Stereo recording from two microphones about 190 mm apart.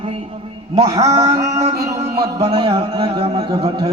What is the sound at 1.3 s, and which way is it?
Speech, 15° right (ahead or behind).